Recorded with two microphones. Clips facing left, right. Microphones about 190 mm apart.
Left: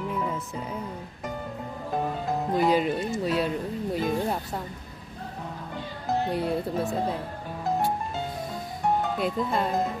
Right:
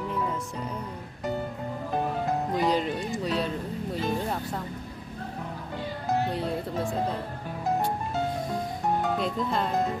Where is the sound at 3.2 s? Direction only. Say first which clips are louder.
Left 3 dB; 10° left (ahead or behind).